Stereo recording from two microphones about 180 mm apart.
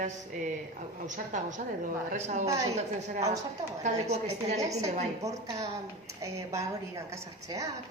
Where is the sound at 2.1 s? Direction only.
40° right (ahead or behind).